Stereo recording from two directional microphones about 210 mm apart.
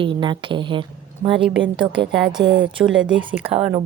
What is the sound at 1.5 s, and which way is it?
Speech, 60° right (ahead or behind).